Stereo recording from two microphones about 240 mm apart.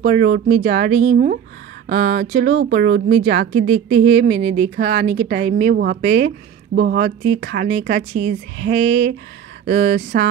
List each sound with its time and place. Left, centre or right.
0.0 s speech: right
0.5 s a woman's voice: right
0.8 s speech: right
1.1 s speech: right
1.9 s a woman's voice: right